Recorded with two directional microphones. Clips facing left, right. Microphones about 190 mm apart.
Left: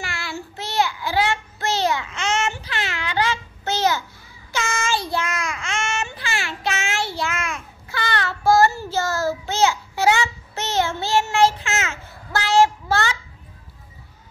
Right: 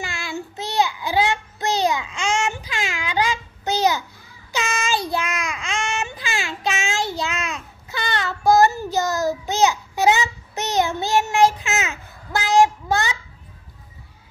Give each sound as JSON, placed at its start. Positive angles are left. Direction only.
{"t": 0.0, "sound": "child singing", "side_deg": -15}